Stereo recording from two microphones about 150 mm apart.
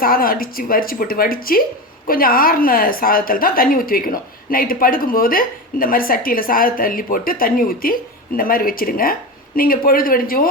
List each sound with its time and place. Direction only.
0.0 s a woman's voice: 75° left (ahead or behind)